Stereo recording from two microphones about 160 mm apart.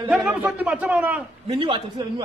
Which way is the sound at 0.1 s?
5° right (ahead or behind).